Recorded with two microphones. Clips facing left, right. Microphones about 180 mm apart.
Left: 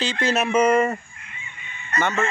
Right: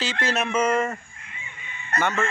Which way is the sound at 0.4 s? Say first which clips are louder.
Left 5 dB; 10° left (ahead or behind).